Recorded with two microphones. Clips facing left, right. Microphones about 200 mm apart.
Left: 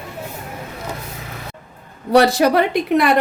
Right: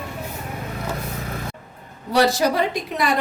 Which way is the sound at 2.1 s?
60° left (ahead or behind).